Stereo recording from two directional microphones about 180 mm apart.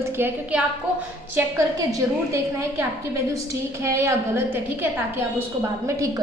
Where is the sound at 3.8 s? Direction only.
15° right (ahead or behind).